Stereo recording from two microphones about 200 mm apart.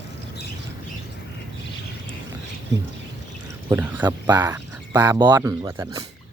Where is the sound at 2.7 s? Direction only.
60° right (ahead or behind).